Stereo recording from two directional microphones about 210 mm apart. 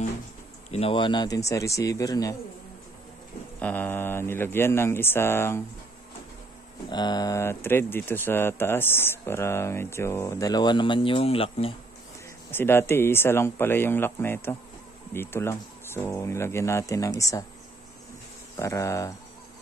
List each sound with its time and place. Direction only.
0.7 s speech: 30° left (ahead or behind)
3.5 s speech: 10° left (ahead or behind)
6.9 s speech: 20° left (ahead or behind)
12.4 s speech: 10° left (ahead or behind)
18.6 s speech: 15° left (ahead or behind)